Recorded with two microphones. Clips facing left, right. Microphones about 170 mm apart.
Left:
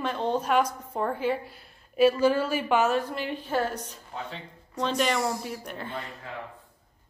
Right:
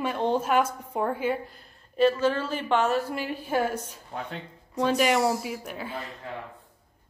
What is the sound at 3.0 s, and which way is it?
A woman's voice, 10° right (ahead or behind).